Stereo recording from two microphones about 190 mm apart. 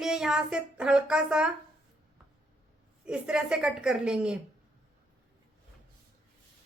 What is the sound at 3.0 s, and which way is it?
Speech, 5° right (ahead or behind).